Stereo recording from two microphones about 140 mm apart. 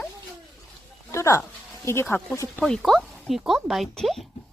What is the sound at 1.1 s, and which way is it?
Speech, 20° left (ahead or behind).